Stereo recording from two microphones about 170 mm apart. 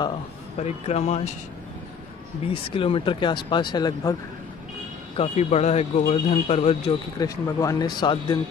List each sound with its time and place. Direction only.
0.6 s speech: 40° left (ahead or behind)
2.5 s speech: 30° left (ahead or behind)
5.1 s speech: 40° left (ahead or behind)
7.2 s speech: 20° left (ahead or behind)